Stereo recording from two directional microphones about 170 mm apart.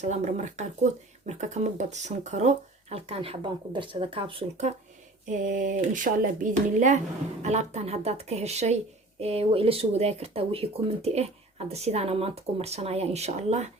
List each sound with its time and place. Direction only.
0.0 s speech: 40° right (ahead or behind)
5.2 s speech: 45° right (ahead or behind)